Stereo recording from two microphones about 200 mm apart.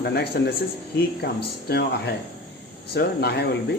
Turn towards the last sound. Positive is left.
turn(degrees=55)  # may be behind; listen again after turning